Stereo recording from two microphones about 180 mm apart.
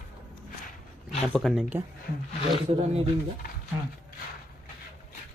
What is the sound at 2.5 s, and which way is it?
Speech, 35° right (ahead or behind).